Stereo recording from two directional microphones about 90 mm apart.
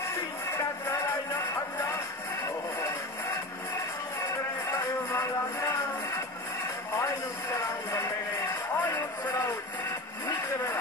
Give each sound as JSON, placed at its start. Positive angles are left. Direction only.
{"t": 0.1, "sound": "music", "side_deg": 30}
{"t": 7.0, "sound": "speech", "side_deg": 30}
{"t": 8.7, "sound": "music", "side_deg": 25}
{"t": 10.2, "sound": "vehicle", "side_deg": 30}